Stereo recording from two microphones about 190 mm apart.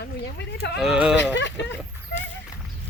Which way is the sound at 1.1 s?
70° left (ahead or behind).